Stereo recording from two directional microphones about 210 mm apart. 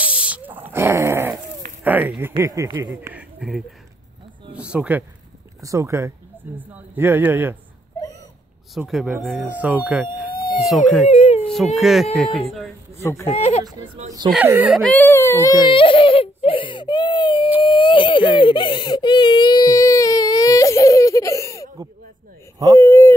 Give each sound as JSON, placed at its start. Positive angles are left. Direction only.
{"t": 0.0, "sound": "dog", "side_deg": -5}
{"t": 1.8, "sound": "speech", "side_deg": -10}
{"t": 8.7, "sound": "speech", "side_deg": 0}
{"t": 11.1, "sound": "whimper", "side_deg": 30}
{"t": 11.4, "sound": "speech", "side_deg": 0}
{"t": 13.3, "sound": "speech", "side_deg": 30}
{"t": 14.3, "sound": "speech", "side_deg": -10}
{"t": 14.8, "sound": "whimper", "side_deg": 5}
{"t": 17.6, "sound": "baby cry", "side_deg": 25}
{"t": 22.8, "sound": "a sound", "side_deg": 15}